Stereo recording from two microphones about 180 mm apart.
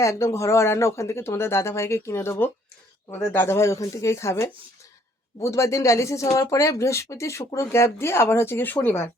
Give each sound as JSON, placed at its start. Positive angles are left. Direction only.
{"t": 0.0, "sound": "speech", "side_deg": 15}